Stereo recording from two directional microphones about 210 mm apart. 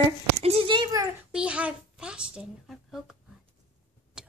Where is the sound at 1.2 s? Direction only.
5° right (ahead or behind).